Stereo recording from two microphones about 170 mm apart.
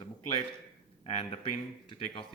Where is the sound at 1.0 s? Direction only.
35° left (ahead or behind).